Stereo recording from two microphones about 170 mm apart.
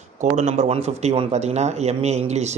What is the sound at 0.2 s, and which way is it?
Speech, 45° right (ahead or behind).